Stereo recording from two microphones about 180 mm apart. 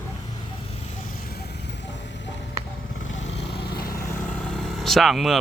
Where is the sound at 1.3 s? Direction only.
60° left (ahead or behind).